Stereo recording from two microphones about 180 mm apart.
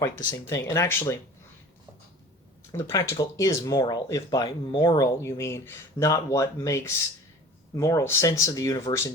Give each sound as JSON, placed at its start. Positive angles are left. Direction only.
{"t": 0.0, "sound": "speech", "side_deg": 20}
{"t": 2.7, "sound": "speech", "side_deg": 15}